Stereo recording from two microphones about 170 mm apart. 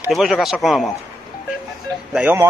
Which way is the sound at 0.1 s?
Centre (ahead or behind).